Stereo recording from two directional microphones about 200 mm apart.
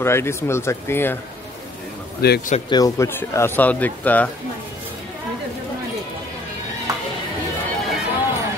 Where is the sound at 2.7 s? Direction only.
15° left (ahead or behind).